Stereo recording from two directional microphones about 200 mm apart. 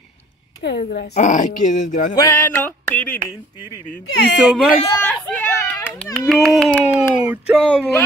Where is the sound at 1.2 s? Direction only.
40° left (ahead or behind).